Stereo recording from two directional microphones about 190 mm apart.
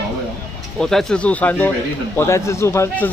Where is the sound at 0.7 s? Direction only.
5° left (ahead or behind).